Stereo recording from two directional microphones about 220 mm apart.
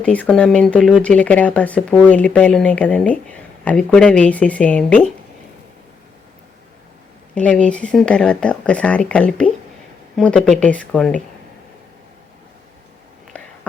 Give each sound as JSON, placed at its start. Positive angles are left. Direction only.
{"t": 0.0, "sound": "speech", "side_deg": 5}
{"t": 7.3, "sound": "speech", "side_deg": 5}